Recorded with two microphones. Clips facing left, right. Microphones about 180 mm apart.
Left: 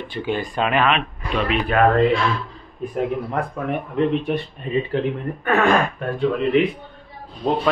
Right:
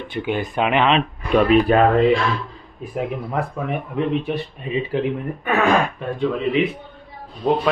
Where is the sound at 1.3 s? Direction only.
50° right (ahead or behind).